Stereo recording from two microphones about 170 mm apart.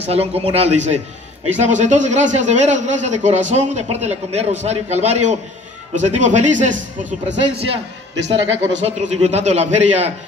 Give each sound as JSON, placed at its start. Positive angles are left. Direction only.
{"t": 0.0, "sound": "a man's voice", "side_deg": -35}
{"t": 7.2, "sound": "speech", "side_deg": -90}
{"t": 8.7, "sound": "a man's voice", "side_deg": -40}